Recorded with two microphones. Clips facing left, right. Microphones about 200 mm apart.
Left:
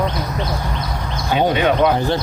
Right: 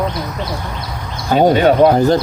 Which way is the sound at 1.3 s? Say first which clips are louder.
Right 6 dB; 40° right (ahead or behind).